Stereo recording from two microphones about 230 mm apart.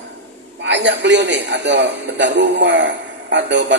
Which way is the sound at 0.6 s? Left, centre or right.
Right.